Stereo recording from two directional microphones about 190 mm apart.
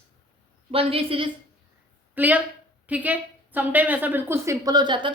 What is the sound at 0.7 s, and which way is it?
Speech, 30° right (ahead or behind).